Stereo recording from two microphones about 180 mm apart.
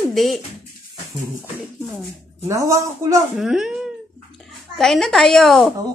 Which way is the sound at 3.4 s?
5° right (ahead or behind).